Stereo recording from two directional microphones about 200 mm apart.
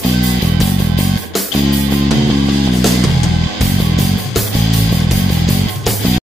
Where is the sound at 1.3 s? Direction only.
Centre (ahead or behind).